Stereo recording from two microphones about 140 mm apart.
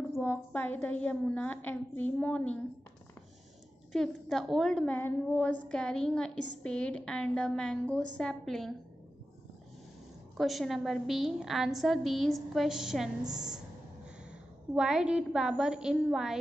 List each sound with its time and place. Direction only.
0.2 s a woman's voice: 15° left (ahead or behind)
3.9 s a woman's voice: centre (ahead or behind)
10.3 s a woman's voice: centre (ahead or behind)
13.2 s a woman's voice: 30° right (ahead or behind)
14.7 s a woman's voice: 5° right (ahead or behind)